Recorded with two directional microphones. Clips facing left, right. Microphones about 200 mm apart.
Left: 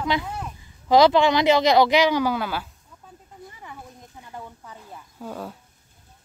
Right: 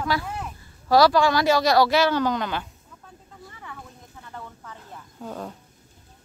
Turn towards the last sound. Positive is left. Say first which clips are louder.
# even
turn(degrees=5)  # may be behind; listen again after turning